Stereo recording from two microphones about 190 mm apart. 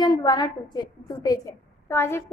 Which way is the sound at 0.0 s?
20° left (ahead or behind).